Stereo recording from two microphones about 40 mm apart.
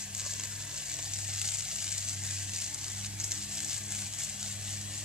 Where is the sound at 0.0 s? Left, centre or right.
Centre.